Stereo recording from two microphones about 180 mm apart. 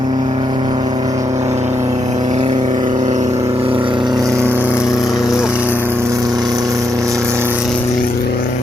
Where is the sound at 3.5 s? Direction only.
30° right (ahead or behind).